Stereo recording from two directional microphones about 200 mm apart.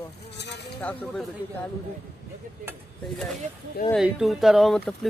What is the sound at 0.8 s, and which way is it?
Speech, 5° left (ahead or behind).